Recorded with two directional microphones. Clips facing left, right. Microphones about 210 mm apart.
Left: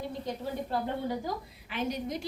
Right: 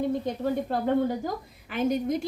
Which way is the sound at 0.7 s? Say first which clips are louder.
Right 6 dB; 50° right (ahead or behind).